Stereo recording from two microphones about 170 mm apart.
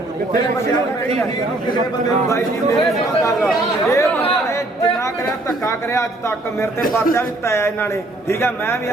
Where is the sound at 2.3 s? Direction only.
15° left (ahead or behind).